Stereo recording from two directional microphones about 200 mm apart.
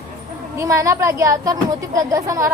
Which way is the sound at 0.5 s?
15° right (ahead or behind).